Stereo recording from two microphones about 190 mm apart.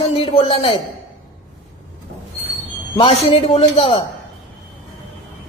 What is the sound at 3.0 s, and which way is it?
Speech, 30° left (ahead or behind).